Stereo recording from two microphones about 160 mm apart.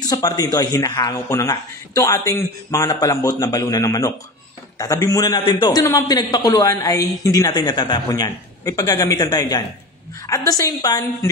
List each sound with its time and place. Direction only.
0.0 s a man's voice: 25° left (ahead or behind)